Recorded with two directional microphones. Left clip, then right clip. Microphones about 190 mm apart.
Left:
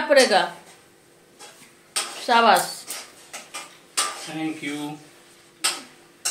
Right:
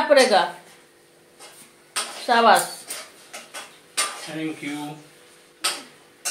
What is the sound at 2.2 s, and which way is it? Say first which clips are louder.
Speech: right 1 dB; 15° left (ahead or behind).